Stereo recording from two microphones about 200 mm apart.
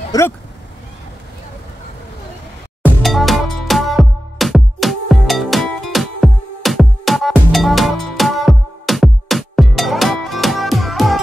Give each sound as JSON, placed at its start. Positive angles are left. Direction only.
{"t": 0.1, "sound": "speech", "side_deg": 20}
{"t": 2.8, "sound": "music", "side_deg": 0}